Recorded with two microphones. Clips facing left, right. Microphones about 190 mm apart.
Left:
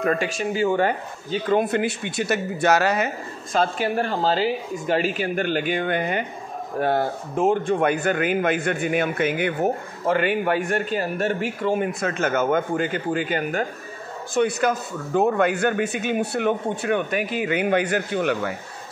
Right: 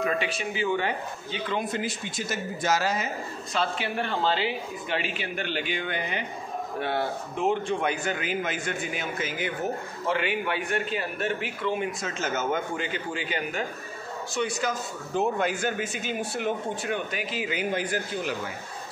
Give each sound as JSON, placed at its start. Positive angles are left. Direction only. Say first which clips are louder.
{"t": 0.0, "sound": "speech", "louder": "left 5 dB", "side_deg": 50}
{"t": 3.5, "sound": "speech", "louder": "left 7 dB", "side_deg": 45}